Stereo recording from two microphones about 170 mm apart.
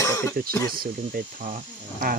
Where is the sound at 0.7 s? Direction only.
60° right (ahead or behind).